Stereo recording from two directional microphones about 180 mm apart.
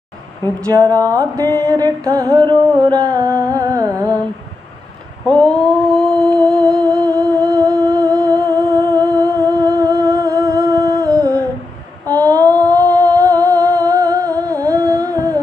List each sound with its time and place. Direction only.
0.7 s music: 15° right (ahead or behind)
5.2 s mantra: 5° left (ahead or behind)
6.3 s humming: 20° right (ahead or behind)
12.1 s female singing: 20° right (ahead or behind)
13.1 s humming: 15° right (ahead or behind)